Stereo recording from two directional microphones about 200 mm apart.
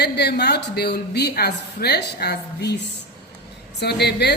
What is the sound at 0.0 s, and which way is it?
Speech, 55° left (ahead or behind).